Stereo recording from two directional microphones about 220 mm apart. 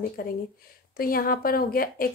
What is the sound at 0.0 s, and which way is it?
A woman's voice, 40° left (ahead or behind).